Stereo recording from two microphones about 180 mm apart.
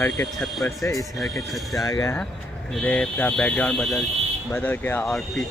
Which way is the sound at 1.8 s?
20° left (ahead or behind).